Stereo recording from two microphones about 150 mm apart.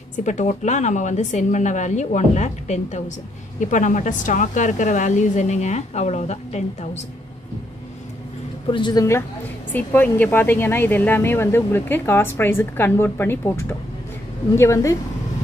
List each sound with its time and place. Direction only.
0.2 s a woman's voice: 50° left (ahead or behind)
8.6 s speech: 30° left (ahead or behind)
9.7 s speech: 10° left (ahead or behind)